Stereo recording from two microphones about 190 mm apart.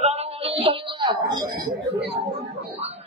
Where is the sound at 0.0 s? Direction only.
35° right (ahead or behind).